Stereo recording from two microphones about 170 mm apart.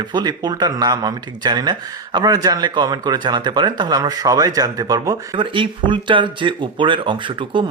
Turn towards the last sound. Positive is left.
turn(degrees=-30)  # may be behind; listen again after turning